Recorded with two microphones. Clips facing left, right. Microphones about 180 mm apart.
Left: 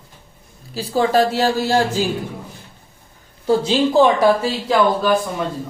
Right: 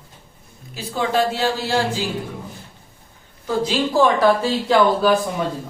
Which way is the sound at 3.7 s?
20° left (ahead or behind).